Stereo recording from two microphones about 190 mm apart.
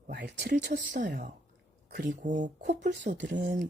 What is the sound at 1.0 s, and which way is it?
Speech, 50° right (ahead or behind).